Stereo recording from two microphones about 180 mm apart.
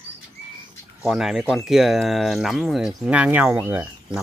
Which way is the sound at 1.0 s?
5° right (ahead or behind).